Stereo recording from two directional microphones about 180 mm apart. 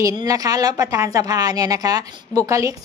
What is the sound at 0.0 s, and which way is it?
A woman's voice, 20° right (ahead or behind).